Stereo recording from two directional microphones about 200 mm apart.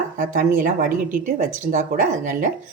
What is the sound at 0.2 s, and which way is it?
A woman's voice, 40° right (ahead or behind).